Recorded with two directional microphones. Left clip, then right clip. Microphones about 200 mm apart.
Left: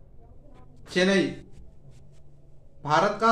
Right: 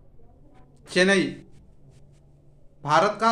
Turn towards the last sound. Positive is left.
turn(degrees=-35)  # may be behind; listen again after turning